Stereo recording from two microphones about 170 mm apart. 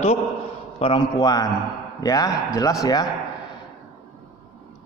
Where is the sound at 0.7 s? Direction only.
30° left (ahead or behind).